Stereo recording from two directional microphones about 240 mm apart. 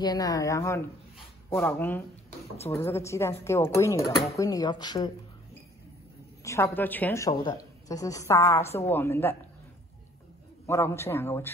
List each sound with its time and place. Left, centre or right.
0.0 s a woman's voice: centre
6.4 s a woman's voice: centre
10.7 s a woman's voice: centre